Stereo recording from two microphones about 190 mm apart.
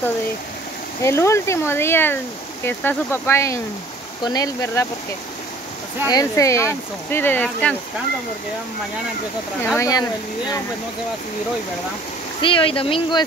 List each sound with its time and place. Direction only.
1.0 s speech: 15° left (ahead or behind)
6.0 s speech: 20° left (ahead or behind)
9.8 s speech: 20° left (ahead or behind)
12.4 s speech: 25° left (ahead or behind)